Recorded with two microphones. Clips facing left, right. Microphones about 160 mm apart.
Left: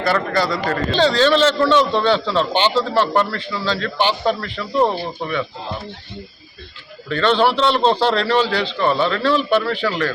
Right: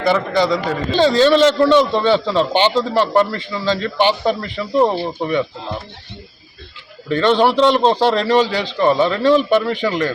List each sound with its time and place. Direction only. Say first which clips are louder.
0.0 s a man's voice: right 3 dB; 15° right (ahead or behind)
7.1 s a man's voice: right 2 dB; 15° right (ahead or behind)